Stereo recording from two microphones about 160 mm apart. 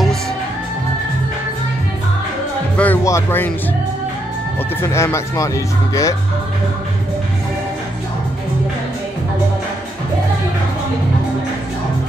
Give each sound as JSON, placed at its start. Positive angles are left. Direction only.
{"t": 2.8, "sound": "speech", "side_deg": 15}
{"t": 4.8, "sound": "speech", "side_deg": 15}